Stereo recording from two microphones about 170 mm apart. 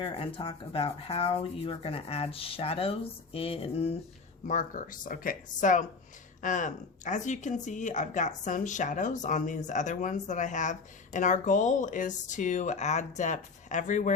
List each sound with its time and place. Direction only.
0.0 s rub: 30° left (ahead or behind)
4.4 s speech: 50° left (ahead or behind)